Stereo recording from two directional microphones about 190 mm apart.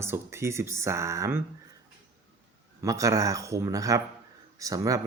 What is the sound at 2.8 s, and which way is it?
Speech, 15° right (ahead or behind).